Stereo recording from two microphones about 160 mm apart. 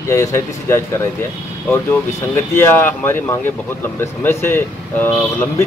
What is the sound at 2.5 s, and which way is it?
Speech, 15° left (ahead or behind).